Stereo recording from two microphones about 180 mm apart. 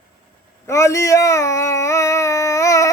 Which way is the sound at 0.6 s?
15° left (ahead or behind).